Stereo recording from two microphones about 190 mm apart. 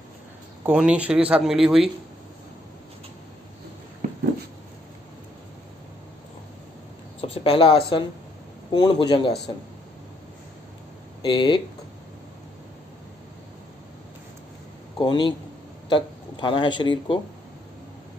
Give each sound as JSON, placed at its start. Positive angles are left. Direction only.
{"t": 0.7, "sound": "speech", "side_deg": -5}
{"t": 7.2, "sound": "a man's voice", "side_deg": 30}
{"t": 11.2, "sound": "a man's voice", "side_deg": 25}
{"t": 15.0, "sound": "a man's voice", "side_deg": 25}